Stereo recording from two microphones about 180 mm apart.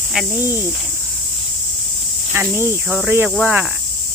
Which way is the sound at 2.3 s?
15° right (ahead or behind).